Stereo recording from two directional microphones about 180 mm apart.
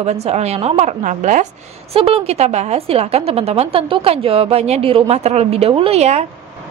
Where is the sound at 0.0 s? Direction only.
35° right (ahead or behind).